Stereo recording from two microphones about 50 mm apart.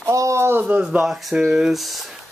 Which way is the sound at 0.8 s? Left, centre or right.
Centre.